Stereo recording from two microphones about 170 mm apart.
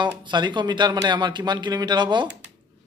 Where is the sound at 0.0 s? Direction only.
25° right (ahead or behind).